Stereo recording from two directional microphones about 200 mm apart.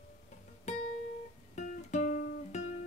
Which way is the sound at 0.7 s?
35° left (ahead or behind).